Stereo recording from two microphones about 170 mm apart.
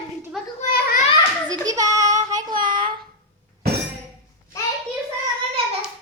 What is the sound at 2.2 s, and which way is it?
Child singing, 20° right (ahead or behind).